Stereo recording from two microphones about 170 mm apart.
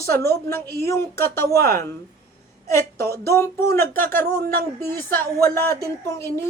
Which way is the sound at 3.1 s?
15° left (ahead or behind).